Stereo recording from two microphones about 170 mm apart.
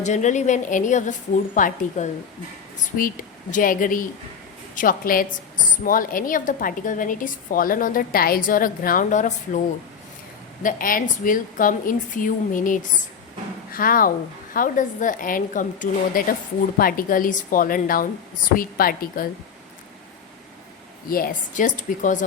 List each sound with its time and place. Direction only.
0.0 s a woman's voice: 45° left (ahead or behind)
3.5 s a woman's voice: 55° left (ahead or behind)
10.6 s a woman's voice: 55° left (ahead or behind)
21.1 s a woman's voice: 55° left (ahead or behind)